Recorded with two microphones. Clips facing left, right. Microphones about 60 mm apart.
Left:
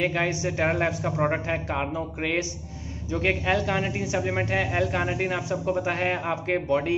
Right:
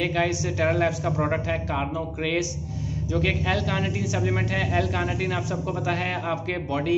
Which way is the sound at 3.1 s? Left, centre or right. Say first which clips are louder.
Left 1 dB; left.